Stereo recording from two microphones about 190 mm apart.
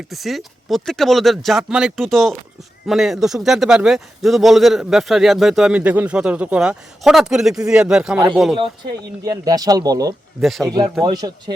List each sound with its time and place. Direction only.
0.1 s a man's voice: centre (ahead or behind)
9.2 s speech: 20° right (ahead or behind)
10.4 s a man's voice: centre (ahead or behind)
11.0 s speech: 20° right (ahead or behind)